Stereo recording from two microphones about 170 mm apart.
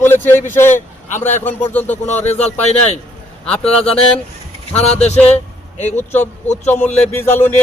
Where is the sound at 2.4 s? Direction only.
40° left (ahead or behind).